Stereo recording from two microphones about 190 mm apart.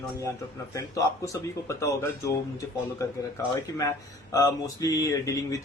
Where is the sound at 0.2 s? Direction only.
15° left (ahead or behind).